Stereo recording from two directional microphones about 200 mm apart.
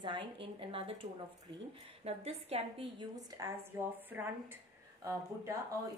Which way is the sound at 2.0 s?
30° right (ahead or behind).